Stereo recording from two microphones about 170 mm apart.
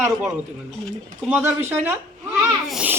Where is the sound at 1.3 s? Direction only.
15° right (ahead or behind).